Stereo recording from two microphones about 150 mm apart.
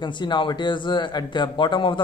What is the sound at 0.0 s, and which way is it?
Speech, 30° left (ahead or behind).